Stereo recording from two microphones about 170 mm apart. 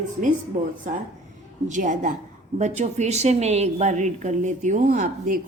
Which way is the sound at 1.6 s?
50° right (ahead or behind).